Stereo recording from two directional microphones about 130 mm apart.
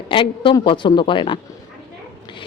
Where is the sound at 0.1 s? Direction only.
40° left (ahead or behind).